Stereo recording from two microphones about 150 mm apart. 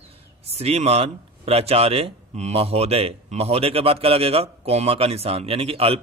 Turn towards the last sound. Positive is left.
turn(degrees=-40)  # may be behind; listen again after turning